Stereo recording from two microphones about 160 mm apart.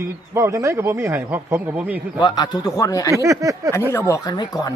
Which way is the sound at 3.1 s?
20° right (ahead or behind).